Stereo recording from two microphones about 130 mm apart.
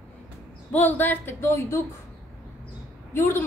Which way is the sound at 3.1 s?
15° left (ahead or behind).